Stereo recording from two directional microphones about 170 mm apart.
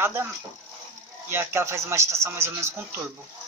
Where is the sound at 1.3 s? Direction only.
15° right (ahead or behind).